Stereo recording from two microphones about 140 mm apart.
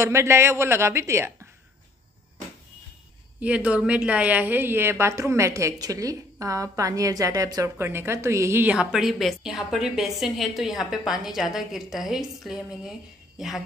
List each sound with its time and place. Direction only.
0.0 s a woman's voice: 20° right (ahead or behind)
3.3 s a woman's voice: 10° right (ahead or behind)